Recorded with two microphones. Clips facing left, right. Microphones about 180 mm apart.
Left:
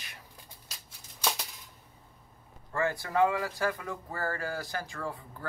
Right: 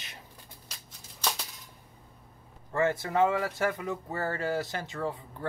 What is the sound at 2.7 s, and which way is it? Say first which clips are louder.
Speech: right 3 dB; 25° right (ahead or behind).